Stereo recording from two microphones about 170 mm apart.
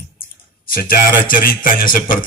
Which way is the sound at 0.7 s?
55° left (ahead or behind).